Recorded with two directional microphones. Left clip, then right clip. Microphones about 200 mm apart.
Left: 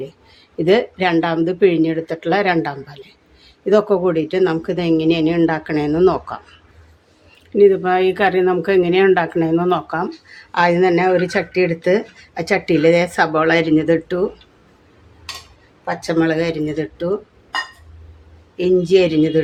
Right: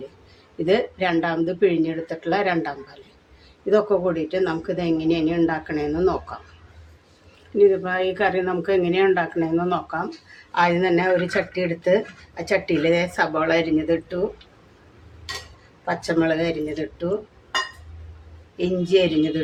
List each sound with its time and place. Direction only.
0.6 s speech: 35° left (ahead or behind)
7.6 s speech: 45° left (ahead or behind)
15.8 s speech: 35° left (ahead or behind)
18.5 s speech: 40° left (ahead or behind)